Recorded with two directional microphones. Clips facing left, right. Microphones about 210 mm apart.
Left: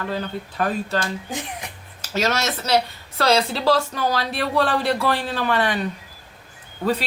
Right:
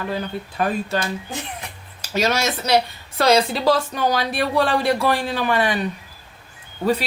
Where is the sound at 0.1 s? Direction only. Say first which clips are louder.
Right 1 dB; 15° right (ahead or behind).